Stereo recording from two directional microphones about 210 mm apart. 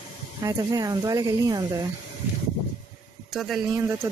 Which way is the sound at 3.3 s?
Centre (ahead or behind).